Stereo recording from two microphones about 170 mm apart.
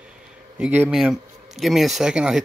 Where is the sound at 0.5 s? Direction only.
10° right (ahead or behind).